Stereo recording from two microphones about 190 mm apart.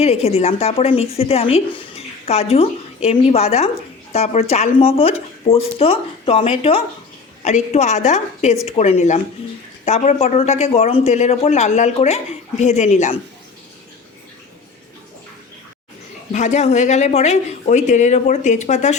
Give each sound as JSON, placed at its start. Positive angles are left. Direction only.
{"t": 0.0, "sound": "speech", "side_deg": 35}
{"t": 16.3, "sound": "speech", "side_deg": 40}